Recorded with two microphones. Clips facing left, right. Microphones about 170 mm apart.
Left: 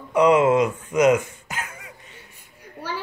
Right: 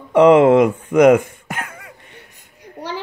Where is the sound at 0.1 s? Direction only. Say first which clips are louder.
Right 7 dB; 60° right (ahead or behind).